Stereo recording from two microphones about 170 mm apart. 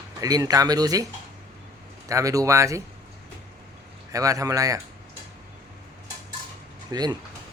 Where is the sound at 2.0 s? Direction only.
20° right (ahead or behind).